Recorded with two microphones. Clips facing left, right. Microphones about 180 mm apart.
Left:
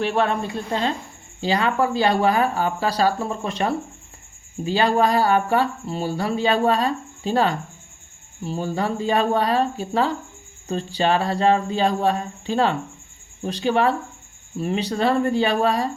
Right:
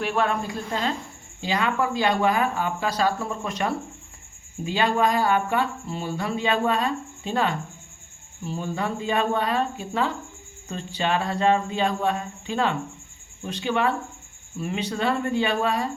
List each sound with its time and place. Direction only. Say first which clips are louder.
0.0 s speech: left 3 dB; 30° left (ahead or behind)